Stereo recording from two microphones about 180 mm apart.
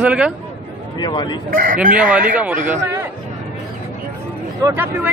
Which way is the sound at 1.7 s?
50° right (ahead or behind).